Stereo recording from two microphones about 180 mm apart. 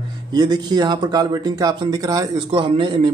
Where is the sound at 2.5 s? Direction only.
30° right (ahead or behind).